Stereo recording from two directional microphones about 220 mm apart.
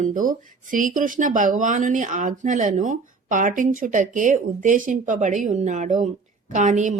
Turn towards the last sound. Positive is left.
turn(degrees=-35)  # may be behind; listen again after turning